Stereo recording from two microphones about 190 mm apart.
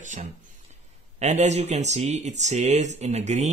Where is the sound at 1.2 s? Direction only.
40° right (ahead or behind).